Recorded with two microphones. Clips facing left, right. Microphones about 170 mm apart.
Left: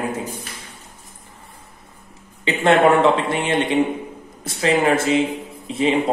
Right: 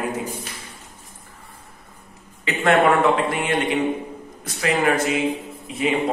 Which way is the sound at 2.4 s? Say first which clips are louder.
Left 2 dB; 25° left (ahead or behind).